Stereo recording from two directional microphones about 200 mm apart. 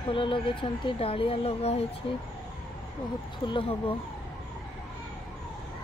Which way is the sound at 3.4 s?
25° left (ahead or behind).